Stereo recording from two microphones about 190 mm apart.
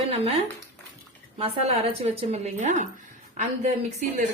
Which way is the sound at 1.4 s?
30° right (ahead or behind).